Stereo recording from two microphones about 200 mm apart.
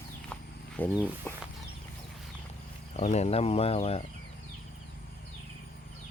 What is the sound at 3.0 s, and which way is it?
Speech, 35° left (ahead or behind).